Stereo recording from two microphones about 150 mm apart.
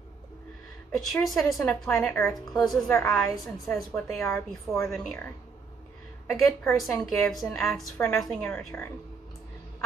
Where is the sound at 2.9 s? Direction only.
10° left (ahead or behind).